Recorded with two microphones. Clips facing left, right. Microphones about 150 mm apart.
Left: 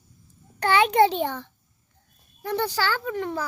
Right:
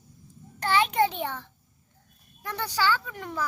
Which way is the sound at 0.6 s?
65° left (ahead or behind).